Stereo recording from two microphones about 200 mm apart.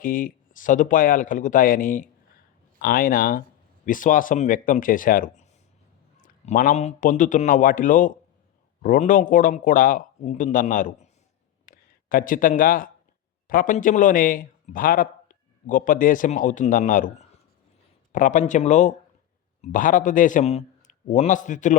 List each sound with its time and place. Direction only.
0.0 s a man's voice: 45° left (ahead or behind)
11.6 s a sound: 45° left (ahead or behind)
13.5 s a man's voice: 45° left (ahead or behind)
18.1 s a man's voice: 40° left (ahead or behind)